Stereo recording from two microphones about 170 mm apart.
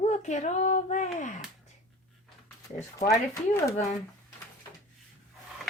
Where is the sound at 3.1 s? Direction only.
15° left (ahead or behind).